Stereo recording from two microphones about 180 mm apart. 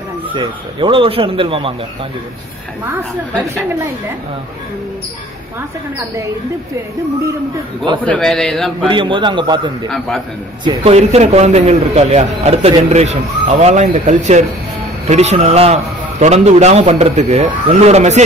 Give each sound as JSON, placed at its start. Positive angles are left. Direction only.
{"t": 0.3, "sound": "speech", "side_deg": -30}
{"t": 8.0, "sound": "a man's voice", "side_deg": 5}
{"t": 8.8, "sound": "speech", "side_deg": -30}
{"t": 9.8, "sound": "a man's voice", "side_deg": 0}
{"t": 10.8, "sound": "a man's voice", "side_deg": -35}